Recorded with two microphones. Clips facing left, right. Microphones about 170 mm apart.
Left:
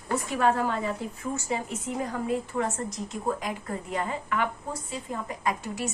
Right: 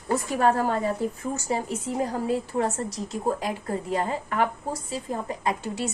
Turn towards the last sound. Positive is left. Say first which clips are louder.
# right 2 dB
turn(degrees=-30)  # may be behind; listen again after turning